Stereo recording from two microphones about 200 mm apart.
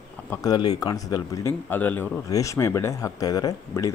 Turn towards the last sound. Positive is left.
turn(degrees=15)  # may be behind; listen again after turning